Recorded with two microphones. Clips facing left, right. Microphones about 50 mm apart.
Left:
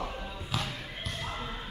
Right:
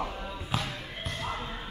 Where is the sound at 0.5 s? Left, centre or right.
Right.